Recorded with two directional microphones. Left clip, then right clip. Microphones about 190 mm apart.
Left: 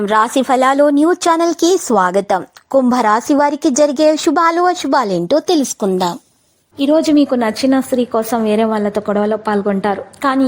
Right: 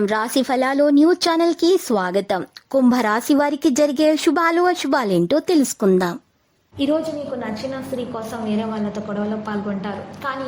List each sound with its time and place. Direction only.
0.0 s a woman's voice: 5° right (ahead or behind)
6.7 s a woman's voice: 30° left (ahead or behind)
7.3 s a woman's voice: 55° left (ahead or behind)